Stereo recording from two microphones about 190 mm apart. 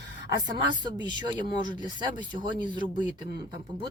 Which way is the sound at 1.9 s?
25° right (ahead or behind).